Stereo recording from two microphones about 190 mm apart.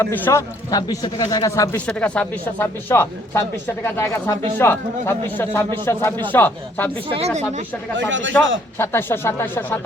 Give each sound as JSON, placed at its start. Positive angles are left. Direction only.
{"t": 0.0, "sound": "speech", "side_deg": 15}
{"t": 7.1, "sound": "speech", "side_deg": -35}
{"t": 7.9, "sound": "speech", "side_deg": -75}
{"t": 8.8, "sound": "speech", "side_deg": 10}